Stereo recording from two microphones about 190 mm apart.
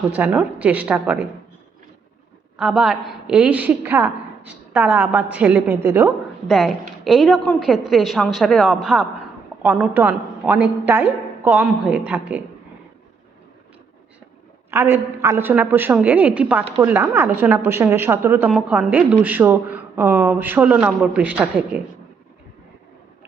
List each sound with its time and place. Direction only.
0.2 s a woman's voice: 10° right (ahead or behind)
2.6 s a woman's voice: centre (ahead or behind)
6.5 s a woman's voice: centre (ahead or behind)
14.7 s a woman's voice: 10° right (ahead or behind)